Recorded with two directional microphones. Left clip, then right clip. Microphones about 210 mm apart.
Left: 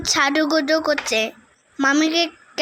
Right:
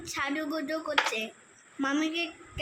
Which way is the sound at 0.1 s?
35° left (ahead or behind).